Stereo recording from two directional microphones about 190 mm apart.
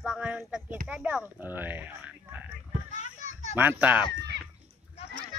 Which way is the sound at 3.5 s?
10° right (ahead or behind).